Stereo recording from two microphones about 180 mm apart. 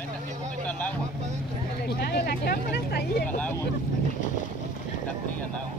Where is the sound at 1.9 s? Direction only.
60° left (ahead or behind).